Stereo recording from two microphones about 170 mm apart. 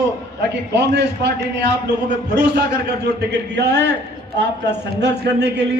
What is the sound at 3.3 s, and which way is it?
A man's voice, 80° right.